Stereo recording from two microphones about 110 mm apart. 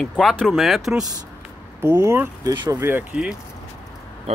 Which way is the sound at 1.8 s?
25° right (ahead or behind).